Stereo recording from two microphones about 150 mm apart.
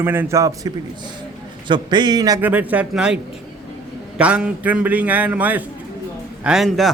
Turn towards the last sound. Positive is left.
turn(degrees=0)  # may be behind; listen again after turning